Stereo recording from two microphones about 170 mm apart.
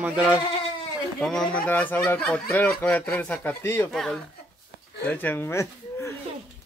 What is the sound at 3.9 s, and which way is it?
Speech, 5° left (ahead or behind).